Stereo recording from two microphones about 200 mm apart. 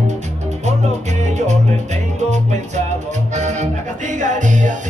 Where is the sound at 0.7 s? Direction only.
35° right (ahead or behind).